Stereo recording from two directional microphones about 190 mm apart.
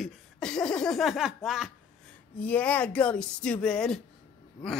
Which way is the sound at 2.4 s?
10° left (ahead or behind).